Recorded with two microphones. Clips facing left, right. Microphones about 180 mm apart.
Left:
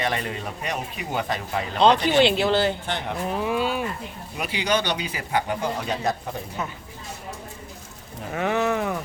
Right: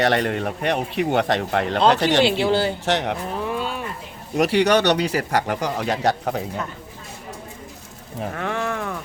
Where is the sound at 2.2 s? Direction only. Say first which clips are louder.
Right 1 dB; 10° right (ahead or behind).